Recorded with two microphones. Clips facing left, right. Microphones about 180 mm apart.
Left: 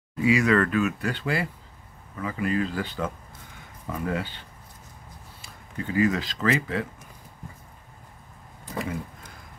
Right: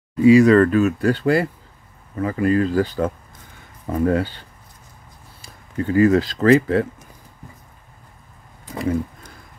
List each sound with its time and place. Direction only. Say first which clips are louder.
0.2 s speech: right 10 dB; 35° right (ahead or behind)